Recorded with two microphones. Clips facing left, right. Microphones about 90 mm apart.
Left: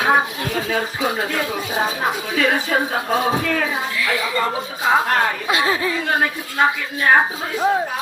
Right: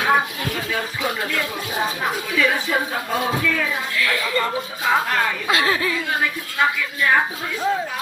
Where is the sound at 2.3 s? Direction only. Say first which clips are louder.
Left 1 dB; 45° left (ahead or behind).